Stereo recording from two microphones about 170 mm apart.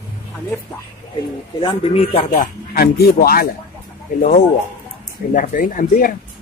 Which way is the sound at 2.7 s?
60° left (ahead or behind).